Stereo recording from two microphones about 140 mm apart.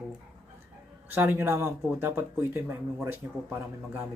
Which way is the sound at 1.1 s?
15° right (ahead or behind).